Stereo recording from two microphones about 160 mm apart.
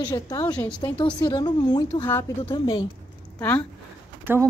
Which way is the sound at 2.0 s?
15° left (ahead or behind).